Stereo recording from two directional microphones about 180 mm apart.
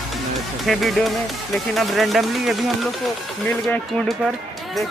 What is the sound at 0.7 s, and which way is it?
Speech, centre (ahead or behind).